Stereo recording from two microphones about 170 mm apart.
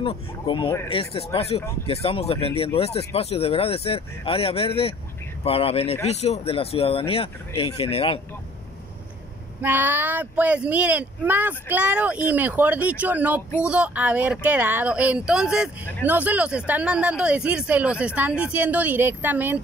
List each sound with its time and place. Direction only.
0.0 s speech: 30° left (ahead or behind)
9.6 s speech: 10° right (ahead or behind)